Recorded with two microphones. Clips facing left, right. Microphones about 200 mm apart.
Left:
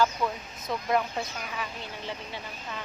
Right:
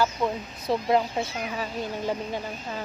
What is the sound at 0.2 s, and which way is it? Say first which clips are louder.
Speech: right 4 dB; 25° right (ahead or behind).